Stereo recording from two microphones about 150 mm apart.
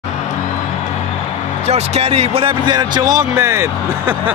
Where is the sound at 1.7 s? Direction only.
45° right (ahead or behind).